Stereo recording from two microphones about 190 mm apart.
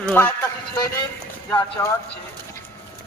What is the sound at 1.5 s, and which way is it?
Speech, 15° left (ahead or behind).